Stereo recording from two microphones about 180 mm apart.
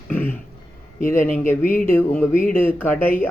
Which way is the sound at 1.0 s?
45° left (ahead or behind).